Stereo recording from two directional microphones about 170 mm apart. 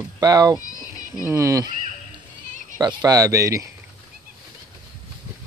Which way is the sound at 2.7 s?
20° right (ahead or behind).